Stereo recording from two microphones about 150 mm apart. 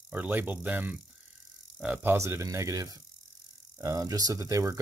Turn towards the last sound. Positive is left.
turn(degrees=-20)  # may be behind; listen again after turning